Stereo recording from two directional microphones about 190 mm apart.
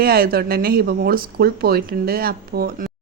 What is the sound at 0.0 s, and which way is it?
Speech, 55° right (ahead or behind).